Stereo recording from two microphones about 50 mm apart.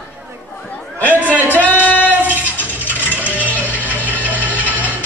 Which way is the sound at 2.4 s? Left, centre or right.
Left.